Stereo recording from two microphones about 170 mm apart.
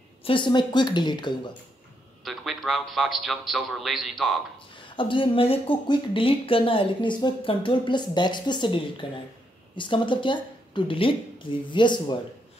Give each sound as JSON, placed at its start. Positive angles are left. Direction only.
{"t": 0.2, "sound": "speech", "side_deg": 30}
{"t": 2.2, "sound": "a man's voice", "side_deg": 0}
{"t": 4.7, "sound": "speech", "side_deg": 30}